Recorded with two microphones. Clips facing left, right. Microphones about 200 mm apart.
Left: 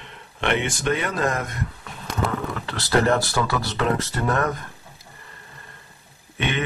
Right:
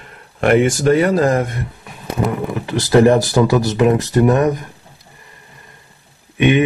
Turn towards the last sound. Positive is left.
turn(degrees=-15)  # may be behind; listen again after turning